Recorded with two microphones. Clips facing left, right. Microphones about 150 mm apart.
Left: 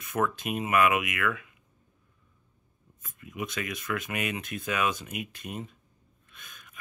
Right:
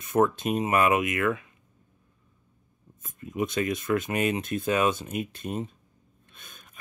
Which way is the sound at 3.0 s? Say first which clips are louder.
Right 7 dB; 35° right (ahead or behind).